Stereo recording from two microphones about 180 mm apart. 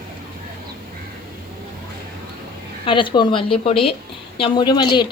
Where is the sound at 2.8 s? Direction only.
30° left (ahead or behind).